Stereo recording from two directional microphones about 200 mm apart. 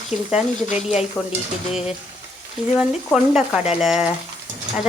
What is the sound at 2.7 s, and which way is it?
Speech, centre (ahead or behind).